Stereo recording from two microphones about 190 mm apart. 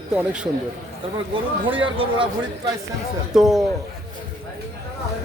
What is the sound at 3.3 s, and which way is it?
Speech, centre (ahead or behind).